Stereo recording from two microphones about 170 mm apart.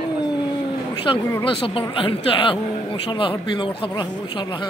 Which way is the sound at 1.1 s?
30° left (ahead or behind).